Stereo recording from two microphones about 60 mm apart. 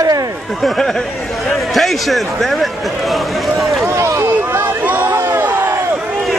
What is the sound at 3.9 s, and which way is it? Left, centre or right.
Speech, right.